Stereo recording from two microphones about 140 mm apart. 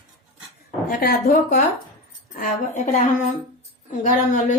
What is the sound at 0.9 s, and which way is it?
Speech, 85° left.